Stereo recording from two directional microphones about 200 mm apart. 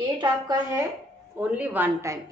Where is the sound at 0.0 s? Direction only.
20° right (ahead or behind).